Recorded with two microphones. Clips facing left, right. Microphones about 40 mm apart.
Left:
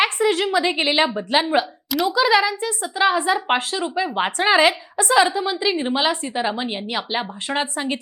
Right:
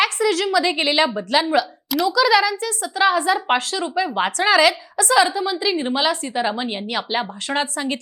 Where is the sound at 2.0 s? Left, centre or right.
Left; by 7.3 s centre.